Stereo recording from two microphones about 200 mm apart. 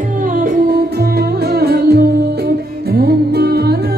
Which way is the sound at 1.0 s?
50° right (ahead or behind).